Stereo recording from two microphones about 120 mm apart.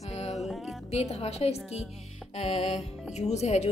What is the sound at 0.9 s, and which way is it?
A woman's voice, 60° left (ahead or behind).